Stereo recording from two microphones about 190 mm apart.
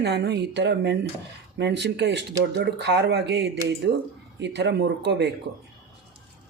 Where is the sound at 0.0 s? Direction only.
60° right (ahead or behind).